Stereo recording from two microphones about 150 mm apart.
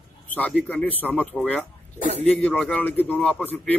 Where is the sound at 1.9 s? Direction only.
45° right (ahead or behind).